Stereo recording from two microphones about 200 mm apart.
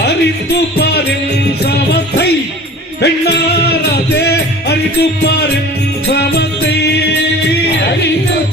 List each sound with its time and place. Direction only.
3.0 s music: 55° left (ahead or behind)